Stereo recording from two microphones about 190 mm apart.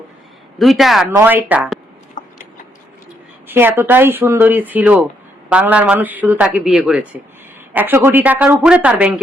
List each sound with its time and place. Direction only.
0.6 s a man's voice: centre (ahead or behind)
2.2 s a sound: 40° left (ahead or behind)
3.4 s a man's voice: 10° right (ahead or behind)